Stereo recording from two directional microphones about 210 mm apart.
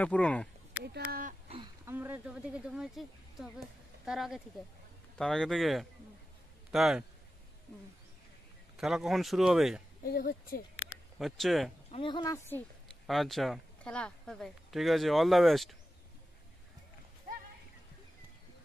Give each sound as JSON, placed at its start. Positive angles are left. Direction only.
{"t": 0.0, "sound": "speech", "side_deg": 5}
{"t": 0.8, "sound": "a sound", "side_deg": -90}
{"t": 1.9, "sound": "speech", "side_deg": -10}
{"t": 8.7, "sound": "speech", "side_deg": 0}
{"t": 10.0, "sound": "a woman's voice", "side_deg": 40}
{"t": 11.1, "sound": "speech", "side_deg": 0}
{"t": 11.9, "sound": "speech", "side_deg": 25}
{"t": 12.4, "sound": "a woman's voice", "side_deg": 5}